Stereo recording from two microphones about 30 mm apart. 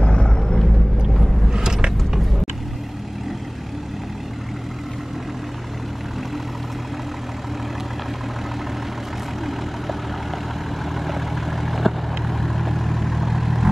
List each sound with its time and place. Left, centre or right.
0.0 s vehicle: left
1.5 s a sound: right
11.0 s vehicle: centre